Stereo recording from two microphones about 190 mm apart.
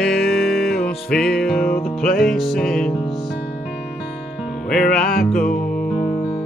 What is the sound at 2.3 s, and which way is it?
Music, centre (ahead or behind).